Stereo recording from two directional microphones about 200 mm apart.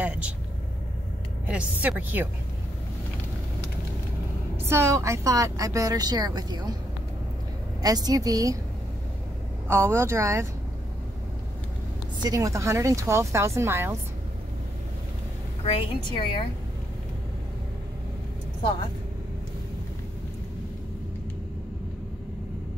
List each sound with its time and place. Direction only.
0.0 s vehicle: 5° right (ahead or behind)
1.5 s a woman's voice: 5° right (ahead or behind)
4.6 s a woman's voice: 15° right (ahead or behind)
7.8 s a woman's voice: 20° right (ahead or behind)
9.7 s a woman's voice: 15° right (ahead or behind)
12.2 s a woman's voice: 20° right (ahead or behind)
15.6 s a woman's voice: 25° left (ahead or behind)